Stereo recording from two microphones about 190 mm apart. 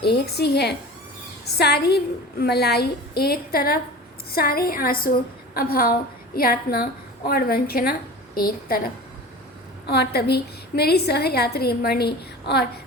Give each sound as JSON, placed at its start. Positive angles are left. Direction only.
{"t": 0.0, "sound": "a woman's voice", "side_deg": 55}
{"t": 9.8, "sound": "a woman's voice", "side_deg": 60}